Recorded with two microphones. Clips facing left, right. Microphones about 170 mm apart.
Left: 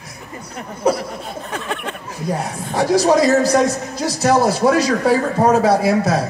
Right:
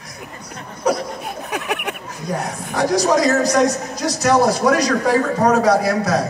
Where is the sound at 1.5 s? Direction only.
15° right (ahead or behind).